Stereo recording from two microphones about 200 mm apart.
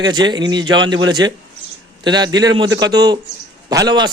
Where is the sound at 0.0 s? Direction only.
20° right (ahead or behind).